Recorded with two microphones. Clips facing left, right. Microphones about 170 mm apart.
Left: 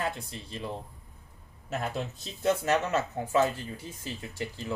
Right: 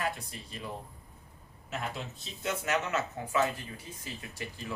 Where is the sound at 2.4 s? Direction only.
35° left (ahead or behind).